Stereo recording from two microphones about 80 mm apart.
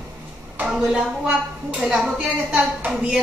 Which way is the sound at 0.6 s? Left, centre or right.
Centre.